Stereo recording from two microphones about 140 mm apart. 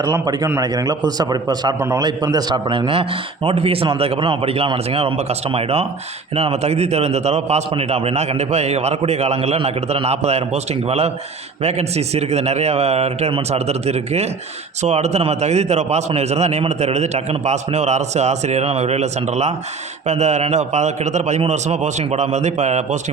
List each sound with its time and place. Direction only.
0.0 s a man's voice: 30° right (ahead or behind); by 23.0 s 55° right (ahead or behind)